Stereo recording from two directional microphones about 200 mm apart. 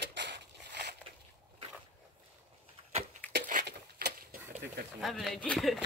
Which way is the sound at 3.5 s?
45° right (ahead or behind).